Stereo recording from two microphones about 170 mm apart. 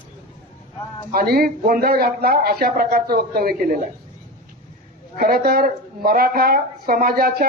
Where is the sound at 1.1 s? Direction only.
60° right (ahead or behind).